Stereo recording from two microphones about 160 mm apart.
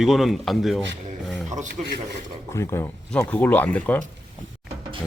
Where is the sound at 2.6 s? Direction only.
20° left (ahead or behind).